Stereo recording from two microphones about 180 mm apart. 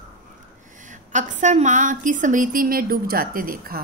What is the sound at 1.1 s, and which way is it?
A woman's voice, 45° right (ahead or behind).